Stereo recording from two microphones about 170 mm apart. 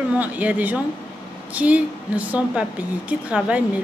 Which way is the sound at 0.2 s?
10° right (ahead or behind).